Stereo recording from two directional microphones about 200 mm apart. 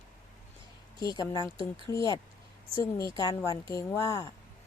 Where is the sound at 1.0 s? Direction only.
20° left (ahead or behind).